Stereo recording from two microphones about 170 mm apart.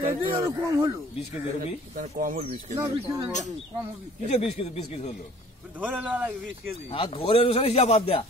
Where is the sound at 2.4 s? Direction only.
35° right (ahead or behind).